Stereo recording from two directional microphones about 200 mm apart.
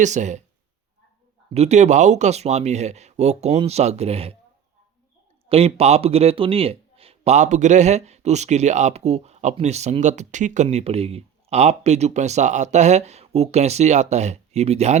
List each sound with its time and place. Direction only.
0.0 s a man's voice: 35° right (ahead or behind)
1.5 s a man's voice: 35° right (ahead or behind)
5.5 s a man's voice: 30° right (ahead or behind)